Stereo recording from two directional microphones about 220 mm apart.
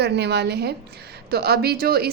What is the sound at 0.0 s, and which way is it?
A woman's voice, 50° right (ahead or behind).